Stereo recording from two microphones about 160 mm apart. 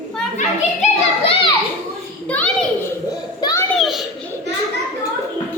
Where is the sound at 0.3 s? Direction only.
40° left (ahead or behind).